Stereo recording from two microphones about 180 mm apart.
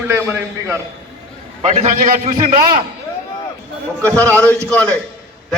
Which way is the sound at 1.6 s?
35° right (ahead or behind).